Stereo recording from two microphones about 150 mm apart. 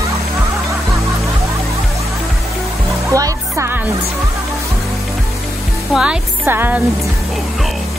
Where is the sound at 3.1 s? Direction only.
20° right (ahead or behind).